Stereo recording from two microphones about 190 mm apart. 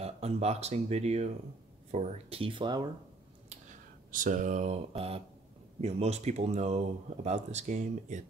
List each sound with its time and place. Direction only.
0.0 s speech: 35° right (ahead or behind)
4.1 s speech: 45° right (ahead or behind)